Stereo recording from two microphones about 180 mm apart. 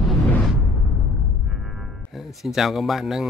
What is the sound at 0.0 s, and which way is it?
Music, centre (ahead or behind).